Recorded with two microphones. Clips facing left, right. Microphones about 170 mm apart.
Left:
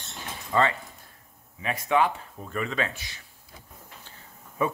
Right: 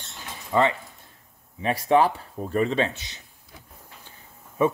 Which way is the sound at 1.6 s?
35° right (ahead or behind).